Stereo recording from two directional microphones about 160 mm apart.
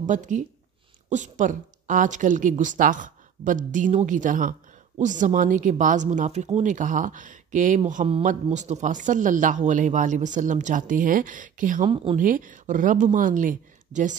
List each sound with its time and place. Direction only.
0.0 s a woman's voice: 55° right (ahead or behind)
11.9 s speech: 30° right (ahead or behind)
12.2 s a woman's voice: 55° right (ahead or behind)